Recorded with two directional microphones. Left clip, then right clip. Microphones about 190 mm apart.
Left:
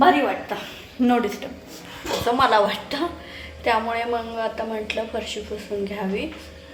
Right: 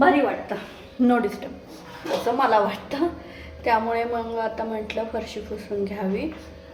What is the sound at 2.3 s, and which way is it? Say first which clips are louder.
A woman's voice: left 3 dB; centre (ahead or behind).